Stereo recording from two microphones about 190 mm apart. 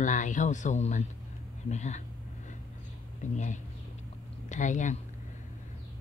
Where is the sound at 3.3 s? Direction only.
40° left (ahead or behind).